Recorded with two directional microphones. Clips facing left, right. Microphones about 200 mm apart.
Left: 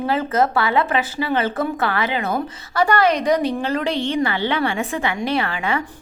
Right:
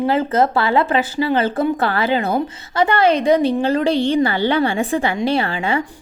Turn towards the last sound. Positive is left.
turn(degrees=-30)  # may be behind; listen again after turning